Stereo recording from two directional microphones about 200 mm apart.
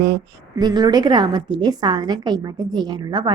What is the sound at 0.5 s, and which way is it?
A woman's voice, 20° right (ahead or behind).